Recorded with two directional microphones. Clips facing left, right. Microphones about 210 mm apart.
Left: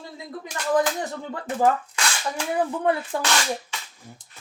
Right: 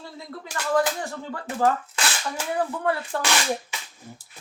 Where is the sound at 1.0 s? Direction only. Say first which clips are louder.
Left 2 dB; 20° left (ahead or behind).